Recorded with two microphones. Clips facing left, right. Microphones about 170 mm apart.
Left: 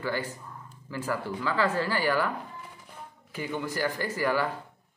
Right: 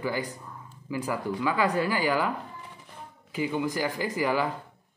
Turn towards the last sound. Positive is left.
turn(degrees=-15)  # may be behind; listen again after turning